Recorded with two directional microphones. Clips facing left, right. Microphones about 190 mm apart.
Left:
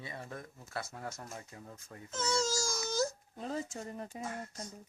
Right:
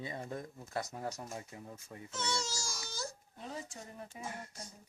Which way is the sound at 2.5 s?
45° left (ahead or behind).